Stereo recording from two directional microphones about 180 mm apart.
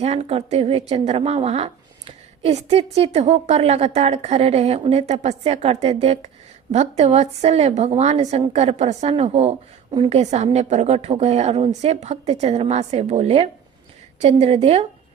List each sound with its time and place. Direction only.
0.0 s a woman's voice: 35° right (ahead or behind)